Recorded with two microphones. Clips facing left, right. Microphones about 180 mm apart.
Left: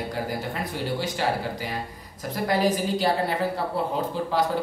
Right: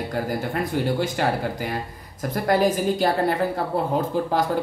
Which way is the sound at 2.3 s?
50° right (ahead or behind).